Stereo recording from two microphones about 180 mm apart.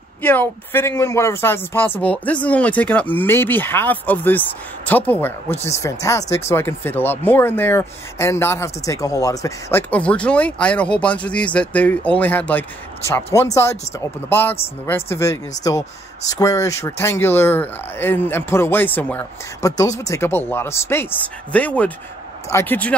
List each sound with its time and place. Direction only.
0.2 s speech: 10° left (ahead or behind)
16.3 s speech: 15° left (ahead or behind)